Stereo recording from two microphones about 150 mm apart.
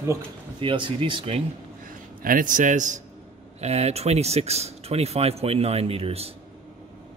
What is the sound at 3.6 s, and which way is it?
Speech, 45° right (ahead or behind).